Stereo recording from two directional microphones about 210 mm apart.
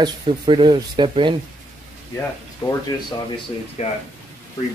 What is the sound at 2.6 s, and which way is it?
Speech, 20° left (ahead or behind).